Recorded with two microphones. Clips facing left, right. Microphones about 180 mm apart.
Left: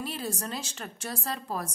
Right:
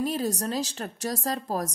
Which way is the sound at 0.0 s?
40° right (ahead or behind).